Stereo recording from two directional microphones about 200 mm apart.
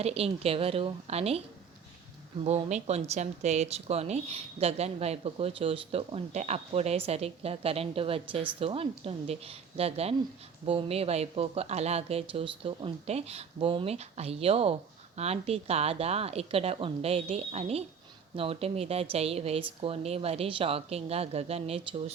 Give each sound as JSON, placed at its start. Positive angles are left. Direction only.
{"t": 0.0, "sound": "speech", "side_deg": -30}
{"t": 2.4, "sound": "speech", "side_deg": -30}